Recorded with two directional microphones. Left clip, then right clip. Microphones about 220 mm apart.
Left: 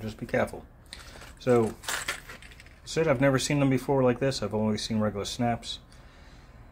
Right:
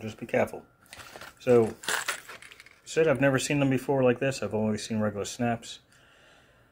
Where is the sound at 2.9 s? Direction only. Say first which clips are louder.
Right 1 dB; 10° right (ahead or behind).